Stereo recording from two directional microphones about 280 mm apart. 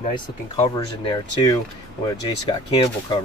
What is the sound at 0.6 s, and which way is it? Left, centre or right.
Speech, centre.